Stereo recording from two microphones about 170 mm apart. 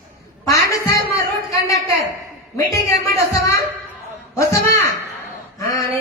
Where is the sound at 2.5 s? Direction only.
15° left (ahead or behind).